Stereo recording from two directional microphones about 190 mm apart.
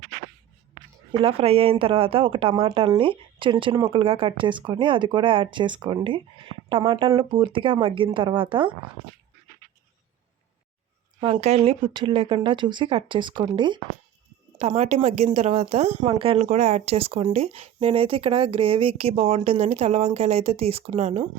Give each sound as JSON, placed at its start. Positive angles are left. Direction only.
{"t": 1.1, "sound": "a woman's voice", "side_deg": -30}
{"t": 11.2, "sound": "a woman's voice", "side_deg": -30}